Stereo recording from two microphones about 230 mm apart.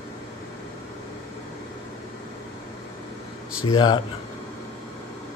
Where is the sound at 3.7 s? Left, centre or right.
Centre.